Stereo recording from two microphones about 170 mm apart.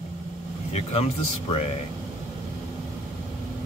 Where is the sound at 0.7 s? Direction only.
40° left (ahead or behind).